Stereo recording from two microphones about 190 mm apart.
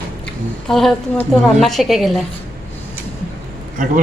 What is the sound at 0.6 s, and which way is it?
A woman's voice, centre (ahead or behind).